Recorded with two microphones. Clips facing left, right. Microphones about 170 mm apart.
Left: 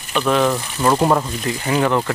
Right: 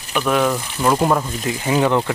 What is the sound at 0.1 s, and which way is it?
Speech, 5° right (ahead or behind).